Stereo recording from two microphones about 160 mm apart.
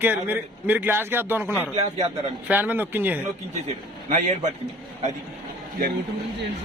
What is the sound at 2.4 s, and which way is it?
Speech, 10° right (ahead or behind).